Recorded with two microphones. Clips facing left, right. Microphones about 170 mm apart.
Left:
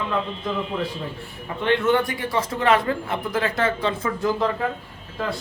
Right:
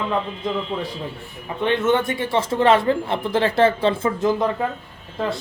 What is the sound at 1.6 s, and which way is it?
Speech, 20° right (ahead or behind).